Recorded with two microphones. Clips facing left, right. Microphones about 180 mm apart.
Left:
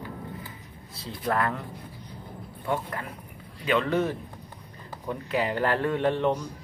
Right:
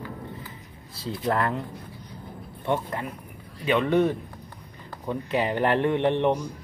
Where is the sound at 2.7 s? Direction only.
25° right (ahead or behind).